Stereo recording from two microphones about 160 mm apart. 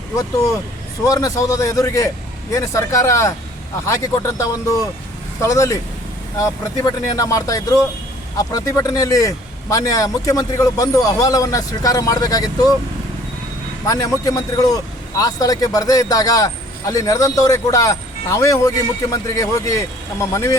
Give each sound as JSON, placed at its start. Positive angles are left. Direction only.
{"t": 1.0, "sound": "speech", "side_deg": 20}
{"t": 13.8, "sound": "speech", "side_deg": 20}